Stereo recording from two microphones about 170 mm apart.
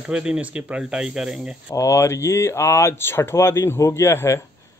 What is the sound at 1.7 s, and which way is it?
Speech, 20° left (ahead or behind).